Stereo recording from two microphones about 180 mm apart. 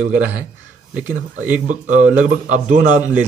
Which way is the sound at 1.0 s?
10° right (ahead or behind).